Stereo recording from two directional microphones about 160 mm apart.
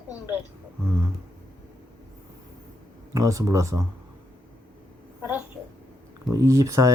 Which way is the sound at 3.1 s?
20° right (ahead or behind).